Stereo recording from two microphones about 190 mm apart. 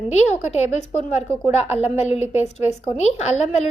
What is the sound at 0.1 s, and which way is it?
A woman's voice, 35° left (ahead or behind).